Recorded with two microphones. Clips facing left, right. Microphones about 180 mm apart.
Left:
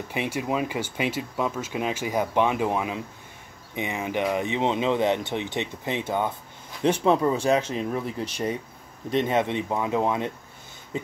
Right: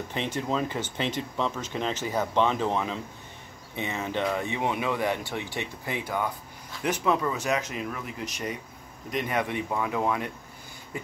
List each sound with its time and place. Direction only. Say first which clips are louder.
0.1 s speech: left 3 dB; 10° left (ahead or behind)